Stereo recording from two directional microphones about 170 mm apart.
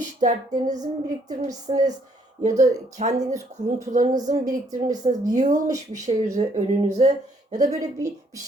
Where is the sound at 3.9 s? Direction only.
50° right (ahead or behind).